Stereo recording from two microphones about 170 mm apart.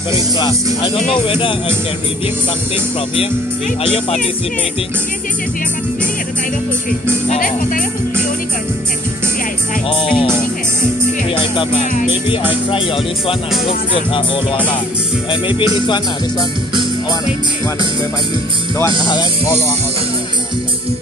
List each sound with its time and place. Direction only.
1.2 s music: 30° left (ahead or behind)
3.8 s music: 35° left (ahead or behind)
7.2 s speech: 50° left (ahead or behind)
9.8 s music: 30° left (ahead or behind)
12.7 s music: 30° left (ahead or behind)
18.9 s music: 25° left (ahead or behind)